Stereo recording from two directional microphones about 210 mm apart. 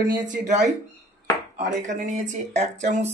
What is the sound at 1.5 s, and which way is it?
Speech, 35° right (ahead or behind).